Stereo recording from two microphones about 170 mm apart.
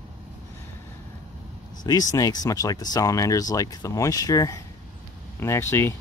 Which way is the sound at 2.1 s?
20° left (ahead or behind).